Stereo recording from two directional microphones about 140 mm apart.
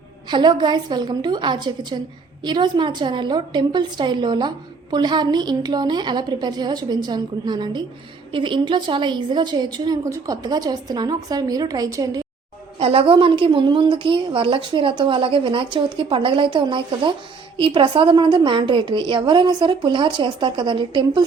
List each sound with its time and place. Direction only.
0.3 s a woman's voice: 35° right (ahead or behind)
12.8 s a woman's voice: 40° right (ahead or behind)